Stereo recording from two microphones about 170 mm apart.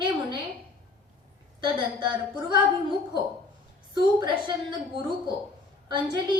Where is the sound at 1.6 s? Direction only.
25° right (ahead or behind).